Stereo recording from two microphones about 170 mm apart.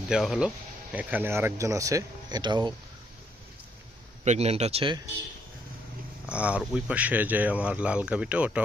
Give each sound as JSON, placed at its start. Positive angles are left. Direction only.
{"t": 0.1, "sound": "speech", "side_deg": -5}
{"t": 4.2, "sound": "speech", "side_deg": -40}
{"t": 6.2, "sound": "speech", "side_deg": -5}